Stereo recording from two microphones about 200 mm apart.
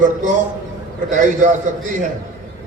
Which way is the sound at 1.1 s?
40° right (ahead or behind).